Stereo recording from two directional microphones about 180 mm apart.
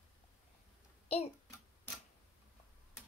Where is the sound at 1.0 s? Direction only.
35° left (ahead or behind).